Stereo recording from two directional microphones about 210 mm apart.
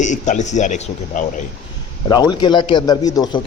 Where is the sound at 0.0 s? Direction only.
35° left (ahead or behind).